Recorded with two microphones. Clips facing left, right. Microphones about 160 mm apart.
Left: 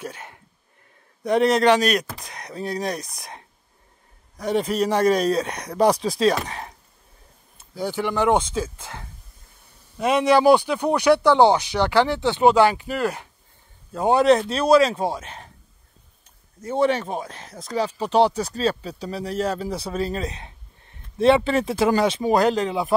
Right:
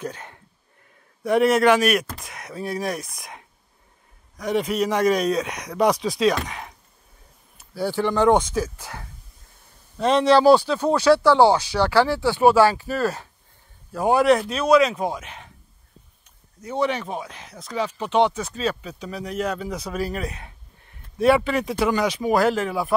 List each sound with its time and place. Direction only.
0.0 s a sound: 20° left (ahead or behind)
1.2 s speech: 20° left (ahead or behind)
2.2 s a sound: 35° left (ahead or behind)
3.2 s speech: 35° left (ahead or behind)
7.5 s speech: 15° left (ahead or behind)
8.4 s speech: 25° left (ahead or behind)
9.9 s speech: 10° left (ahead or behind); by 15.5 s 35° left (ahead or behind)
16.6 s speech: 30° left (ahead or behind)